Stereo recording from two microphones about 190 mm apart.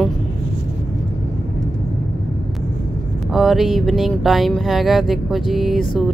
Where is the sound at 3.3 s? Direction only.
Centre (ahead or behind).